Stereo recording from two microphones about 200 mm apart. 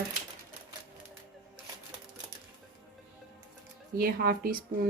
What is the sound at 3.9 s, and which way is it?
Speech, 50° right (ahead or behind).